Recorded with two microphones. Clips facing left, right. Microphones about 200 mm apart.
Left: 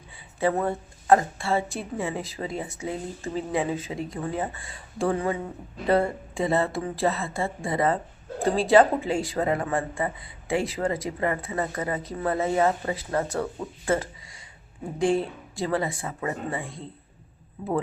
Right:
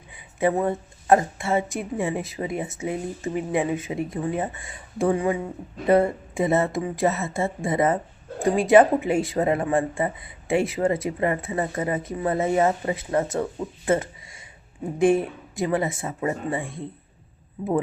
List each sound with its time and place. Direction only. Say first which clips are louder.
0.3 s speech: right 2 dB; 20° right (ahead or behind)
13.8 s a sound: right 3 dB; 25° right (ahead or behind)
14.9 s speech: right 4 dB; 20° right (ahead or behind)